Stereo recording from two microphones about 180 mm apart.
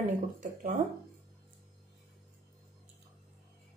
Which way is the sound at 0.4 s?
45° right (ahead or behind).